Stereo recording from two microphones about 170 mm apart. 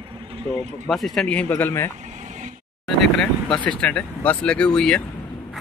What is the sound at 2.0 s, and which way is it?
Vehicle, 45° right (ahead or behind).